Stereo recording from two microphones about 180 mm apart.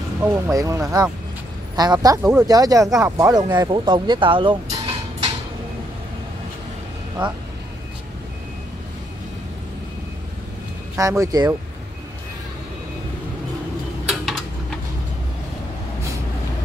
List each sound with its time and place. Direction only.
0.2 s speech: 15° right (ahead or behind)
11.0 s speech: 15° right (ahead or behind)
14.0 s a sound: centre (ahead or behind)